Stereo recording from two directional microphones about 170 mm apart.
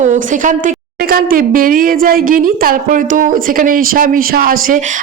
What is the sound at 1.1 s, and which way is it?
Speech, 55° right (ahead or behind).